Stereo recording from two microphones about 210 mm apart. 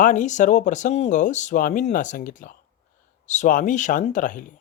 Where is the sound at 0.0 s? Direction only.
35° left (ahead or behind).